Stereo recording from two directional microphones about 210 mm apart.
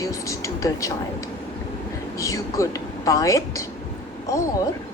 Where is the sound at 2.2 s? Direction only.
15° left (ahead or behind).